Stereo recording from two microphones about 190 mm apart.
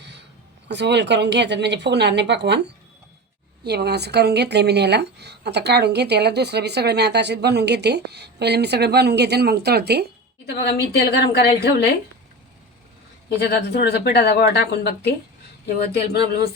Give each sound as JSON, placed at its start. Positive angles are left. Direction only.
{"t": 0.0, "sound": "a sound", "side_deg": -65}
{"t": 0.7, "sound": "speech", "side_deg": -65}
{"t": 3.6, "sound": "speech", "side_deg": -60}
{"t": 10.5, "sound": "a woman's voice", "side_deg": 60}
{"t": 13.3, "sound": "a woman's voice", "side_deg": 60}
{"t": 16.1, "sound": "a woman's voice", "side_deg": 55}